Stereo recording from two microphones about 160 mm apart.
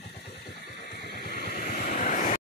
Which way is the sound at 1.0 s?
75° left (ahead or behind).